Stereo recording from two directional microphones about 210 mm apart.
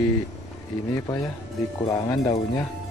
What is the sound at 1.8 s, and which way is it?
Speech, 15° left (ahead or behind).